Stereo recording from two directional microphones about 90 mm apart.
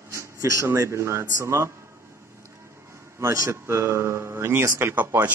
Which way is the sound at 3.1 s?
35° right (ahead or behind).